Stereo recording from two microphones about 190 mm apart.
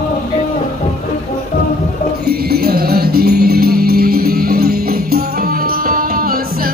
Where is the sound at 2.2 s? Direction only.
55° right (ahead or behind).